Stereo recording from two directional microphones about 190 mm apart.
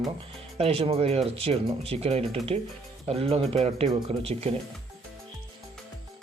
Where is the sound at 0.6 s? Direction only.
30° right (ahead or behind).